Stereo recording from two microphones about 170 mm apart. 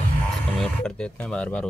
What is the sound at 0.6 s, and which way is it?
Speech, 5° left (ahead or behind).